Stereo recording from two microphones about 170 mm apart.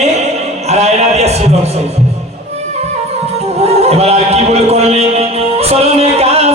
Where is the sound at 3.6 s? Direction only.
40° right (ahead or behind).